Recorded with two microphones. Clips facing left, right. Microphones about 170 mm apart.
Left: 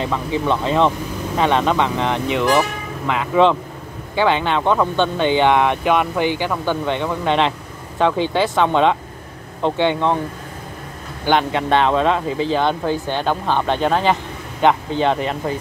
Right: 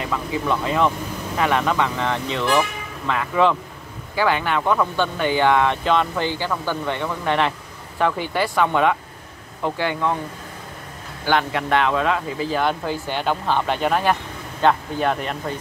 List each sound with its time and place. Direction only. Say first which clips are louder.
0.0 s speech: left 4 dB; 25° left (ahead or behind)
11.2 s speech: left 3 dB; 20° left (ahead or behind)